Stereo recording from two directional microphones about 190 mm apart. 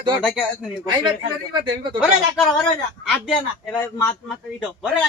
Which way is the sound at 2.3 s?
5° left (ahead or behind).